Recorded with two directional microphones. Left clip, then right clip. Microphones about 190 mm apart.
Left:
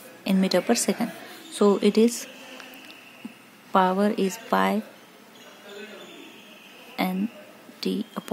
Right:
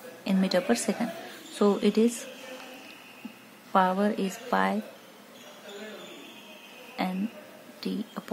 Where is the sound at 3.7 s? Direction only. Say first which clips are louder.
Left 3 dB; 20° left (ahead or behind).